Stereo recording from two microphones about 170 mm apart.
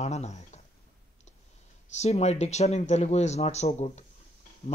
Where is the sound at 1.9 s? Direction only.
40° left (ahead or behind).